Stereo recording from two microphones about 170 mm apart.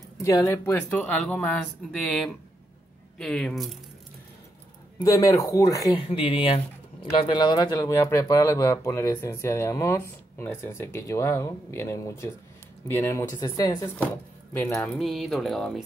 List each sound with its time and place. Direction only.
0.2 s speech: 20° left (ahead or behind); by 3.7 s centre (ahead or behind)
5.0 s speech: 20° left (ahead or behind)
6.0 s speech: 30° left (ahead or behind)
15.0 s speech: centre (ahead or behind)